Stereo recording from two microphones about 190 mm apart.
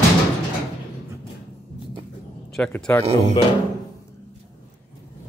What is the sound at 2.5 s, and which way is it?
Speech, 5° left (ahead or behind).